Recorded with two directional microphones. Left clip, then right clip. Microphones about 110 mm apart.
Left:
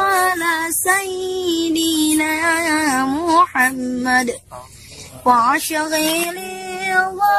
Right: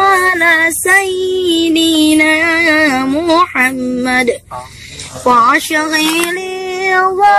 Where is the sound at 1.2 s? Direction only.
35° left (ahead or behind).